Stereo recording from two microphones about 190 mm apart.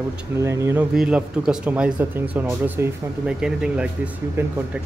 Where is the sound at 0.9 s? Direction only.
5° right (ahead or behind).